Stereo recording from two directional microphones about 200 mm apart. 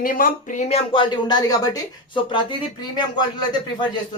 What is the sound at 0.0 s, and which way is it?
Speech, 45° left (ahead or behind).